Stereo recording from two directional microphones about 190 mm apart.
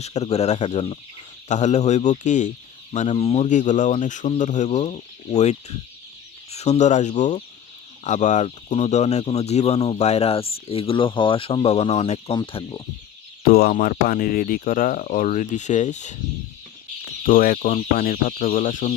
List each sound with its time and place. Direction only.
0.0 s speech: 35° left (ahead or behind)
13.5 s speech: 50° left (ahead or behind)
17.2 s speech: 50° left (ahead or behind)